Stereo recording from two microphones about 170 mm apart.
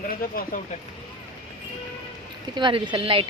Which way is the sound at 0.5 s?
55° left (ahead or behind).